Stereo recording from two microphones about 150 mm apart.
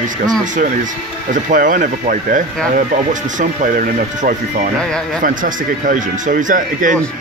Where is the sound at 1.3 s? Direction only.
60° right (ahead or behind).